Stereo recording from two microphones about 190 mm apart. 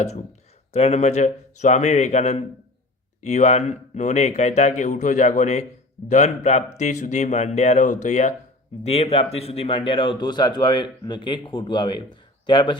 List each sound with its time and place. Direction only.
0.0 s a man's voice: 35° left (ahead or behind)